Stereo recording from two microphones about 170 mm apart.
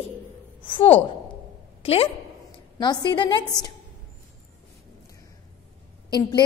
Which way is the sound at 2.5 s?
25° left (ahead or behind).